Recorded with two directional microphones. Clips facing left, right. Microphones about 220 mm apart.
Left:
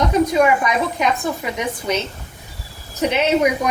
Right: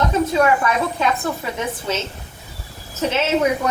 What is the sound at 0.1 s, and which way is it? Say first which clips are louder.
A woman's voice: left 2 dB; 15° left (ahead or behind).